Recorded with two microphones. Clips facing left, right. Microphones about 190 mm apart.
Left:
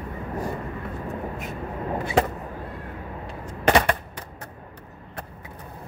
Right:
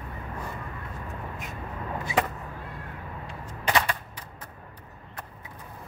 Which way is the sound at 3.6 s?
70° left (ahead or behind).